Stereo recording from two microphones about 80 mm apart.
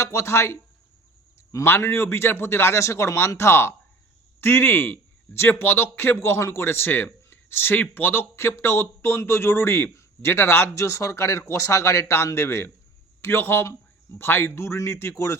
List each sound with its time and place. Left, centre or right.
0.0 s a man's voice: left
1.6 s a man's voice: left